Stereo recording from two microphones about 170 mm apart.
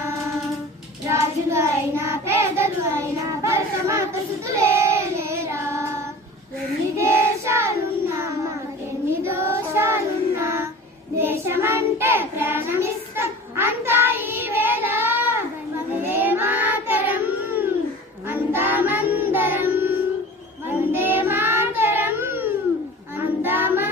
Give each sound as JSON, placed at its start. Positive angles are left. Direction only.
{"t": 1.1, "sound": "child singing", "side_deg": -15}
{"t": 6.9, "sound": "child singing", "side_deg": -15}